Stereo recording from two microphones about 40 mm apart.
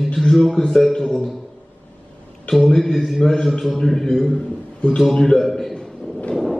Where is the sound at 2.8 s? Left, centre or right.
Centre.